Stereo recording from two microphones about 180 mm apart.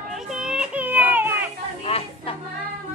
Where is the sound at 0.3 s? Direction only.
5° right (ahead or behind).